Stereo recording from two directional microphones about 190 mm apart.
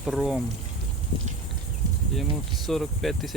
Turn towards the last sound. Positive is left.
turn(degrees=0)  # may be behind; listen again after turning